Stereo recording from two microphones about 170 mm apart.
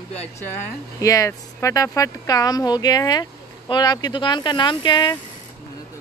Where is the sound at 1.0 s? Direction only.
20° left (ahead or behind).